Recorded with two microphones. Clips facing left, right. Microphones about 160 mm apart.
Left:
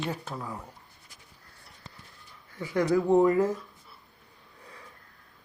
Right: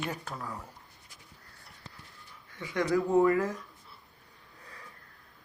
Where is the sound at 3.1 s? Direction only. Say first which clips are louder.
Left 3 dB; 20° left (ahead or behind).